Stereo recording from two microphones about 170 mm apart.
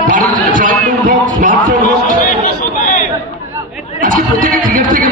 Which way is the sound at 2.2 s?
50° left (ahead or behind).